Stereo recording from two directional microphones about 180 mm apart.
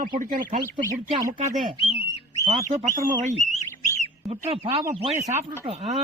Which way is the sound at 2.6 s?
50° right (ahead or behind).